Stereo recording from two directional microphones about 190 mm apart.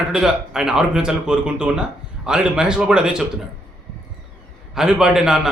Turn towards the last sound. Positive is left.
turn(degrees=-5)  # may be behind; listen again after turning